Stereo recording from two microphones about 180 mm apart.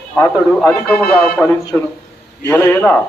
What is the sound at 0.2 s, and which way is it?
A man's voice, 10° left (ahead or behind).